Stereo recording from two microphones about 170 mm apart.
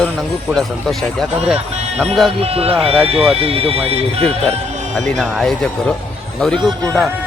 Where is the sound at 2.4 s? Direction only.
35° right (ahead or behind).